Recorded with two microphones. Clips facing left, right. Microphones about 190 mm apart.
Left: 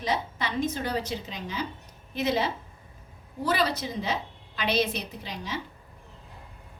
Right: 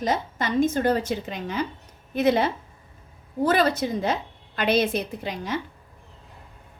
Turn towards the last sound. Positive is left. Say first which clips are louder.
# right 7 dB
turn(degrees=-55)  # may be behind; listen again after turning